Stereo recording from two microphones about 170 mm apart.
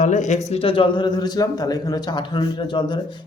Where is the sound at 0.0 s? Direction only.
45° left (ahead or behind).